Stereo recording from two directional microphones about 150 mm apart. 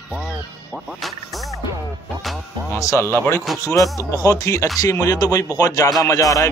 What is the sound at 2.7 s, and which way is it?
Speech, 20° left (ahead or behind).